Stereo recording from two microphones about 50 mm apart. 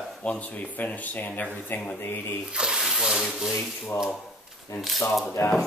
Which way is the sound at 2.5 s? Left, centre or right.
Centre.